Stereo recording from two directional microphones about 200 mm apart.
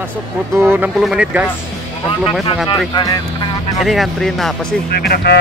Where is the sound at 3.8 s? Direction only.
Centre (ahead or behind).